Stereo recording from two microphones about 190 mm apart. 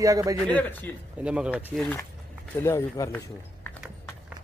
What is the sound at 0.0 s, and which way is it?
Speech, 15° right (ahead or behind).